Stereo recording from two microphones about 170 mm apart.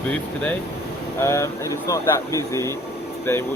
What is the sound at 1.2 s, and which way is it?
Speech, 20° left (ahead or behind).